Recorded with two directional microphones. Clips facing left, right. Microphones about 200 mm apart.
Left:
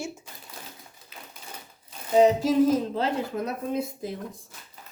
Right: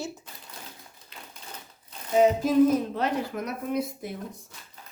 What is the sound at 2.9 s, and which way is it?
Speech, 25° left (ahead or behind).